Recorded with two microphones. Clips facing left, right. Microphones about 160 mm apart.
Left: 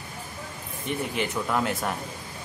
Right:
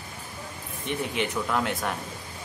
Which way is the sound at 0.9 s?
Centre (ahead or behind).